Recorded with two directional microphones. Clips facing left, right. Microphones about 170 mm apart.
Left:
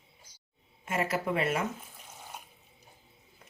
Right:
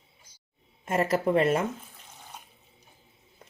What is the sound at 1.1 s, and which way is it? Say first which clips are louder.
Speech: right 8 dB; 40° right (ahead or behind).